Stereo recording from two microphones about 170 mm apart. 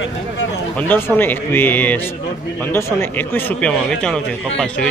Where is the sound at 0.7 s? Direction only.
10° left (ahead or behind).